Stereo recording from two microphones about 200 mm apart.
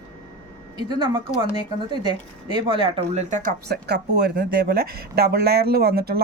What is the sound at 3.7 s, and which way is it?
Speech, 55° right (ahead or behind).